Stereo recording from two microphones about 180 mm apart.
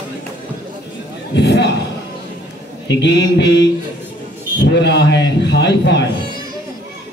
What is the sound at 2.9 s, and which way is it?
Speech, 75° left (ahead or behind).